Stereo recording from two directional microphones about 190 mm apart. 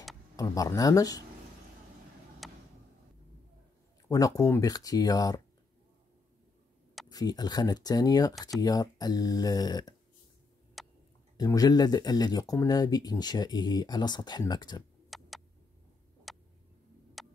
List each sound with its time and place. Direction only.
0.4 s speech: 20° left (ahead or behind)
2.4 s a sound: centre (ahead or behind)
4.1 s speech: 15° left (ahead or behind)
7.1 s speech: 20° left (ahead or behind)
10.8 s tick-tock: centre (ahead or behind)
11.3 s speech: 20° left (ahead or behind)
15.0 s tick: centre (ahead or behind)
17.2 s music: centre (ahead or behind)